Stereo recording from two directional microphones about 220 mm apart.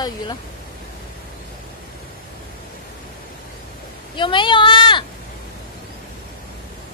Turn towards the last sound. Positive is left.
turn(degrees=20)  # may be behind; listen again after turning